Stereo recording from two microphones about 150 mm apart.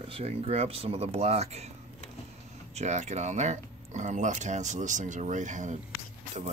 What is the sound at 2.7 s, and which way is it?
Speech, 50° right (ahead or behind).